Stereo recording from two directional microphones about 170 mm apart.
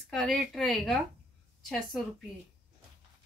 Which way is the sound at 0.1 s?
5° left (ahead or behind).